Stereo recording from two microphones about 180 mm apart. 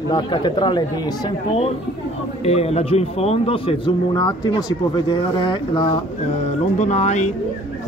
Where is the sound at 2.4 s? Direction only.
35° left (ahead or behind).